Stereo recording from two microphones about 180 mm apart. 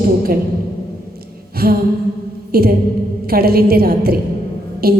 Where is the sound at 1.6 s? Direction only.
60° right (ahead or behind).